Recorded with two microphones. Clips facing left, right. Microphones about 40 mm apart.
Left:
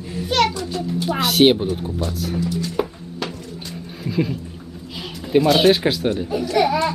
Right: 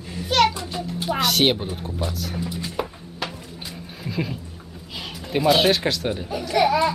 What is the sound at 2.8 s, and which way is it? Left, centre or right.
Music, centre.